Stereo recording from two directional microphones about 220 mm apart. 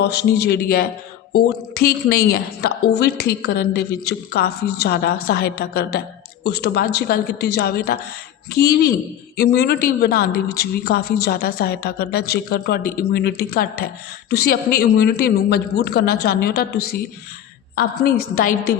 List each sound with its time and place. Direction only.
0.0 s a man's voice: 50° left (ahead or behind)